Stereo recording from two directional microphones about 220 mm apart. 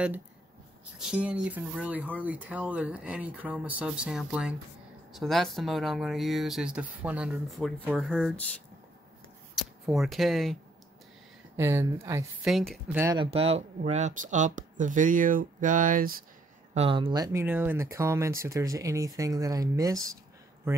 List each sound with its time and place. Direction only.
0.9 s speech: 5° right (ahead or behind)
11.5 s speech: 10° right (ahead or behind)
12.4 s speech: centre (ahead or behind)
13.2 s speech: 25° right (ahead or behind)
16.7 s speech: 25° right (ahead or behind)